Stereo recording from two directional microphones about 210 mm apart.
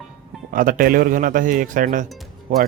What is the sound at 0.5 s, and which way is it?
Speech, 40° right (ahead or behind).